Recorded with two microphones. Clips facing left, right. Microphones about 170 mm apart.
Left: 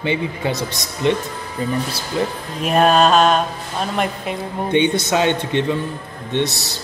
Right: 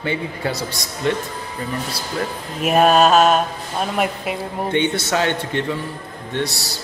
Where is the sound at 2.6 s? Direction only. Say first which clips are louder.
Even; 5° right (ahead or behind).